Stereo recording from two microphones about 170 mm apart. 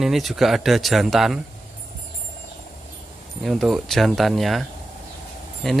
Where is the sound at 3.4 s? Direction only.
Centre (ahead or behind).